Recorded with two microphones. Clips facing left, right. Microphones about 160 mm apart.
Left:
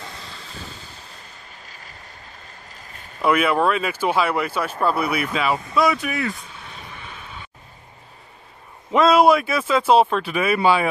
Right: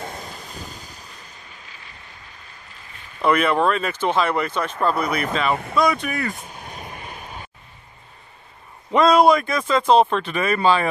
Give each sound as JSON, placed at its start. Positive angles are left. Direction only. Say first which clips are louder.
{"t": 0.0, "sound": "a sound", "louder": "right 5 dB", "side_deg": -50}
{"t": 1.7, "sound": "vehicle", "louder": "left 1 dB", "side_deg": 40}
{"t": 2.7, "sound": "a sound", "louder": "left 2 dB", "side_deg": 40}
{"t": 3.2, "sound": "speech", "louder": "even", "side_deg": 5}
{"t": 6.3, "sound": "vehicle", "louder": "right 3 dB", "side_deg": -45}
{"t": 8.9, "sound": "speech", "louder": "even", "side_deg": 5}